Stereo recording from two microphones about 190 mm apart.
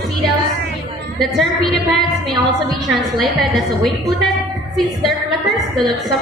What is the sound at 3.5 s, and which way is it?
A woman's voice, centre (ahead or behind).